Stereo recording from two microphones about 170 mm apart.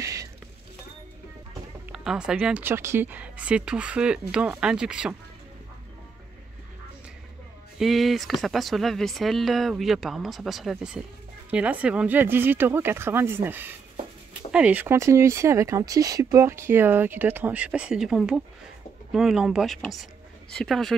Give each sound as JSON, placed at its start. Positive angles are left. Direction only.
{"t": 0.0, "sound": "a sound", "side_deg": -20}
{"t": 1.9, "sound": "speech", "side_deg": -5}
{"t": 7.8, "sound": "speech", "side_deg": 0}